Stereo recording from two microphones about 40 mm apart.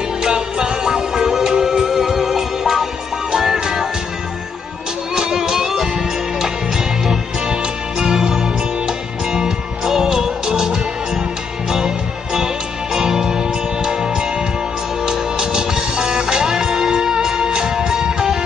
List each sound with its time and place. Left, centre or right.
0.2 s music: centre
5.1 s music: centre
8.0 s music: centre
9.3 s music: centre
12.9 s music: centre